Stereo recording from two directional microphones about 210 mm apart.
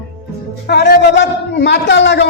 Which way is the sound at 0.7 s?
50° left (ahead or behind).